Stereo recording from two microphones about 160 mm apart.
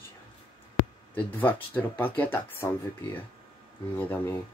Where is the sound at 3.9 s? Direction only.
15° left (ahead or behind).